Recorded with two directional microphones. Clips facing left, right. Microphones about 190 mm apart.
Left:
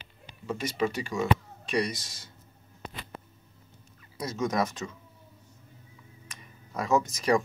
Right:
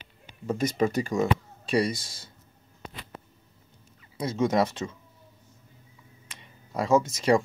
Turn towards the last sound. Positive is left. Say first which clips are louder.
# right 3 dB
turn(degrees=-30)  # may be behind; listen again after turning